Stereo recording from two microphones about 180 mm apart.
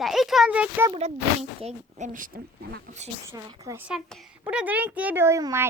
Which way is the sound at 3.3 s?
20° right (ahead or behind).